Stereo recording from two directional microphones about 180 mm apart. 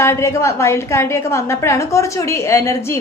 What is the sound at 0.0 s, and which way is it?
A woman's voice, 15° left (ahead or behind).